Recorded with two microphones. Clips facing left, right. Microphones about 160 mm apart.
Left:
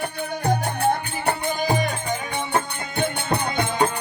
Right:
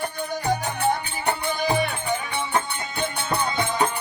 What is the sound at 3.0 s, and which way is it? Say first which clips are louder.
Music: left 2 dB; 60° left (ahead or behind).